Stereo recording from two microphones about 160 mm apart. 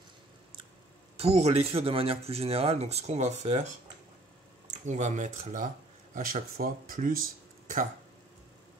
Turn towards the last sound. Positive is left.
turn(degrees=-60)  # may be behind; listen again after turning